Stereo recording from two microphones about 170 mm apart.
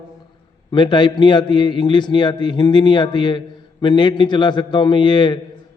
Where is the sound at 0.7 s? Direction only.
25° left (ahead or behind).